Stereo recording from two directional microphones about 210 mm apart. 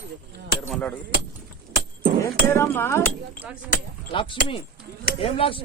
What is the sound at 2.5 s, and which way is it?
Cutlery, 10° left (ahead or behind).